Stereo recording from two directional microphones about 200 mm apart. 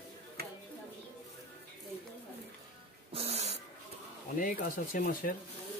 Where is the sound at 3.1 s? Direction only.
30° right (ahead or behind).